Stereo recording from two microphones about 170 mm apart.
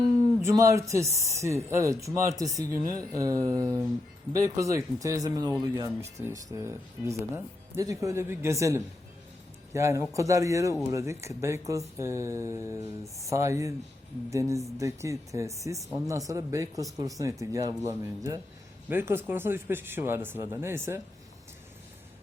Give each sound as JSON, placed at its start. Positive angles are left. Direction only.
{"t": 0.4, "sound": "speech", "side_deg": -20}